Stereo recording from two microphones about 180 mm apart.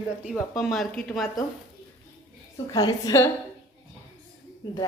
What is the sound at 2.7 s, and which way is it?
Speech, 20° left (ahead or behind).